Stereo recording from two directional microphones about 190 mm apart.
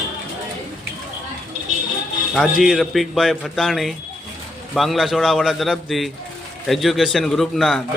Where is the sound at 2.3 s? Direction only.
Centre (ahead or behind).